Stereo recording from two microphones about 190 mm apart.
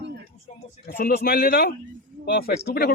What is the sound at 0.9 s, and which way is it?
Speech, 50° left (ahead or behind).